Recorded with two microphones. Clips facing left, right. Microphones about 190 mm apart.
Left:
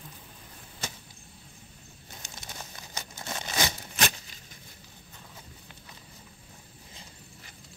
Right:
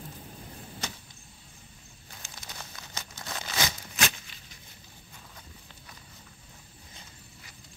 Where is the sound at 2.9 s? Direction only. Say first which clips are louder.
Left 2 dB; 20° left (ahead or behind).